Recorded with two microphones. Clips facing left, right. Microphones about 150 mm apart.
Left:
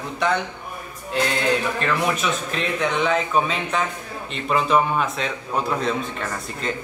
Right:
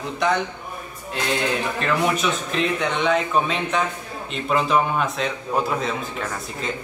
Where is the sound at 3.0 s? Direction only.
Centre (ahead or behind).